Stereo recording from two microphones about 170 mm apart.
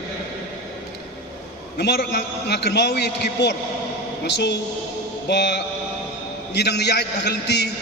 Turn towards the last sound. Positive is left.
turn(degrees=80)